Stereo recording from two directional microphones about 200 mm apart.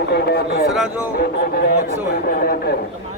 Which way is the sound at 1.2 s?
50° left (ahead or behind).